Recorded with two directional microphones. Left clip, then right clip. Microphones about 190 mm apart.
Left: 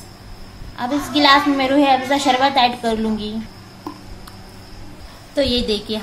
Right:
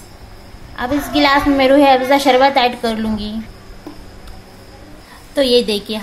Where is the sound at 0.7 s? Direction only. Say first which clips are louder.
Right 3 dB; 15° right (ahead or behind).